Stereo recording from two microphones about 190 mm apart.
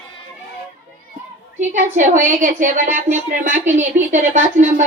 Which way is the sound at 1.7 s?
40° right (ahead or behind).